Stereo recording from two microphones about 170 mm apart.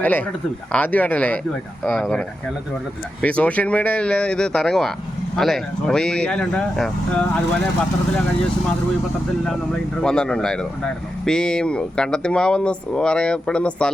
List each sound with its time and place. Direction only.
0.0 s speech: 10° left (ahead or behind)
10.0 s speech: 5° left (ahead or behind)